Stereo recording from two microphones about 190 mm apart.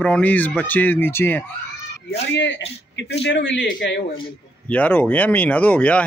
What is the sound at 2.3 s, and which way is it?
A man's voice, 70° left (ahead or behind).